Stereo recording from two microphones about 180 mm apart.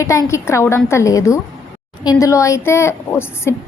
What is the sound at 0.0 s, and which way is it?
A woman's voice, 15° left (ahead or behind).